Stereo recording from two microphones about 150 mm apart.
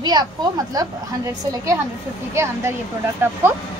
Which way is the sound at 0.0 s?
25° right (ahead or behind).